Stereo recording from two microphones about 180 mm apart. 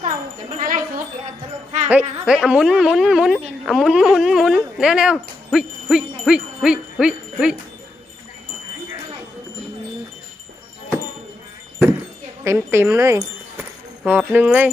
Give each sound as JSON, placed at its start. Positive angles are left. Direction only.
{"t": 0.6, "sound": "a sound", "side_deg": -50}
{"t": 1.9, "sound": "speech", "side_deg": -5}
{"t": 12.5, "sound": "speech", "side_deg": -15}